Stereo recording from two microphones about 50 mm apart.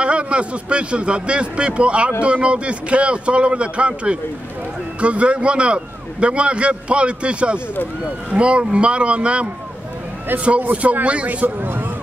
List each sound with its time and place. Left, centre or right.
0.0 s a man's voice: right
10.6 s a man's voice: right
11.4 s speech: right